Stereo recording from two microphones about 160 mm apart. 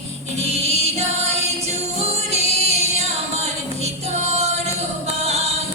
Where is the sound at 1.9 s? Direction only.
40° right (ahead or behind).